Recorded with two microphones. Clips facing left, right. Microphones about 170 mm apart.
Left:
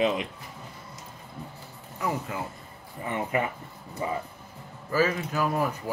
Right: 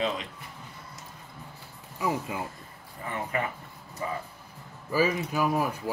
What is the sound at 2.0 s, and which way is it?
Speech, 15° right (ahead or behind).